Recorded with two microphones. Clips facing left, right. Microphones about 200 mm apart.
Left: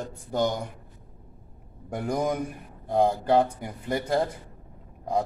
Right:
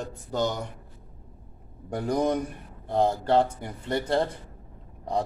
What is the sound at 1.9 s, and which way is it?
Speech, 10° left (ahead or behind).